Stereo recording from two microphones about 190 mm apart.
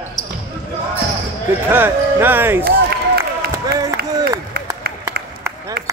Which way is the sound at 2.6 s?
55° right (ahead or behind).